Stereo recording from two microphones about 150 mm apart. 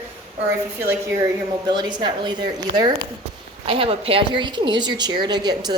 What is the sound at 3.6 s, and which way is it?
A woman's voice, 40° right (ahead or behind).